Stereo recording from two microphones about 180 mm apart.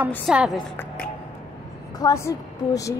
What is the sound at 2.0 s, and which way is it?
Speech, 20° left (ahead or behind).